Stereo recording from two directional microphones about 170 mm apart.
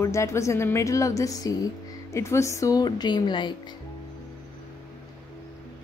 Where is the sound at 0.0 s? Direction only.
15° left (ahead or behind).